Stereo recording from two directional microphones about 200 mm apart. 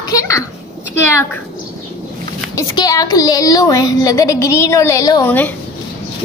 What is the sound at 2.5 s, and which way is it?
A woman's voice, 20° left (ahead or behind).